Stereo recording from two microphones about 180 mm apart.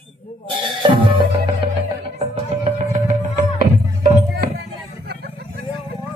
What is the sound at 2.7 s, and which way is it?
Music, 40° right (ahead or behind).